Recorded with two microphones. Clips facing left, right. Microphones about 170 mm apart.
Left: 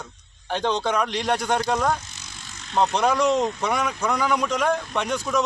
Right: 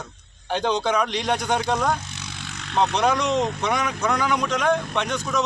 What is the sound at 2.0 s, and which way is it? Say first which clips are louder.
Vehicle: right 7 dB; 65° right (ahead or behind).